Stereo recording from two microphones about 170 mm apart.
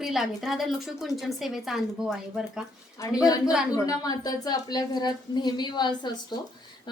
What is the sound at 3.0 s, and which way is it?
A woman's voice, 20° left (ahead or behind).